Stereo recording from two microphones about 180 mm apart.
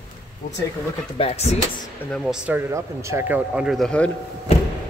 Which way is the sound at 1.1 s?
35° left (ahead or behind).